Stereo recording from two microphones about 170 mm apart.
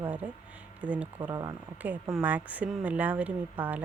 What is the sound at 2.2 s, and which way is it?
A woman's voice, 10° right (ahead or behind).